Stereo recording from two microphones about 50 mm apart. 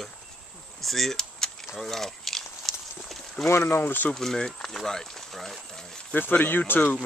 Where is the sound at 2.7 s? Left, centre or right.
Centre.